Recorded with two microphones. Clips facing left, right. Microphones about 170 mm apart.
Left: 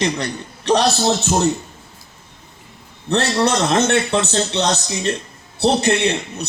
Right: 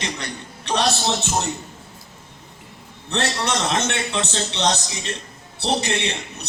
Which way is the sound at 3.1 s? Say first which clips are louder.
Left 6 dB; 40° left (ahead or behind).